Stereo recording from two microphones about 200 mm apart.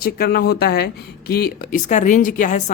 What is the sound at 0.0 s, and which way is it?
Speech, 50° left (ahead or behind).